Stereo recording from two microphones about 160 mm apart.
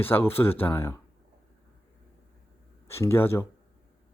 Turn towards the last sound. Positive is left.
turn(degrees=15)  # may be behind; listen again after turning